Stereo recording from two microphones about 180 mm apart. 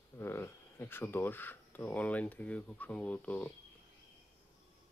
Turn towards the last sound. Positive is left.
turn(degrees=10)  # may be behind; listen again after turning